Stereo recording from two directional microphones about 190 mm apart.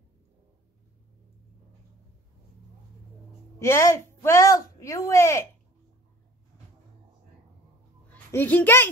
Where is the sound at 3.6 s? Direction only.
15° left (ahead or behind).